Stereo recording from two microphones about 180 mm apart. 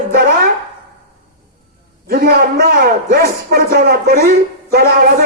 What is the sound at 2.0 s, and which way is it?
A man's voice, 60° right (ahead or behind).